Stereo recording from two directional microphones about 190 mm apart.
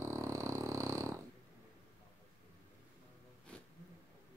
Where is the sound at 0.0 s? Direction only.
15° right (ahead or behind).